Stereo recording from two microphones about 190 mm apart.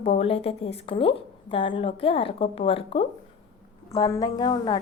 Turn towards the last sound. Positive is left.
turn(degrees=20)  # may be behind; listen again after turning